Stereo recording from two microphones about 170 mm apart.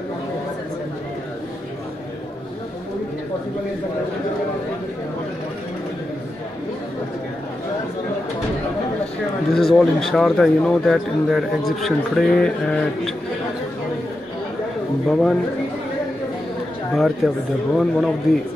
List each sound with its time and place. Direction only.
9.5 s speech: centre (ahead or behind)
15.0 s speech: centre (ahead or behind)
16.9 s speech: centre (ahead or behind)